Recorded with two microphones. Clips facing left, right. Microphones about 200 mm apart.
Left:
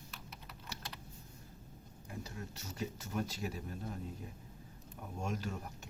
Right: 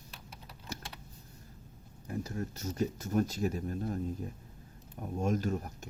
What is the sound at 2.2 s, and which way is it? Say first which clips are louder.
Speech: right 9 dB; 45° right (ahead or behind).